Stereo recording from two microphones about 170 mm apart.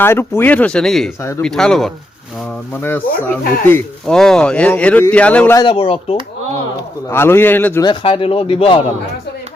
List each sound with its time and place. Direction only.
0.0 s speech: 15° left (ahead or behind)
1.2 s speech: 15° left (ahead or behind)
1.5 s speech: 5° left (ahead or behind)
3.2 s speech: 10° left (ahead or behind)
5.5 s speech: 30° left (ahead or behind)
7.1 s speech: 15° left (ahead or behind)
7.9 s speech: 30° left (ahead or behind)